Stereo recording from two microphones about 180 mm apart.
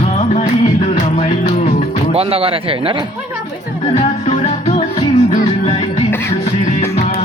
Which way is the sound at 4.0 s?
35° left (ahead or behind).